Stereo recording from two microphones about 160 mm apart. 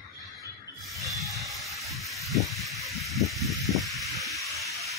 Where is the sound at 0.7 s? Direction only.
Centre (ahead or behind).